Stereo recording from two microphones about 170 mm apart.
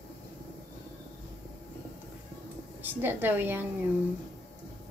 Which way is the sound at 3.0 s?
10° right (ahead or behind).